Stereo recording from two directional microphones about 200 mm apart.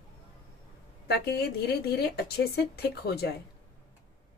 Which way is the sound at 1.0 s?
55° left (ahead or behind).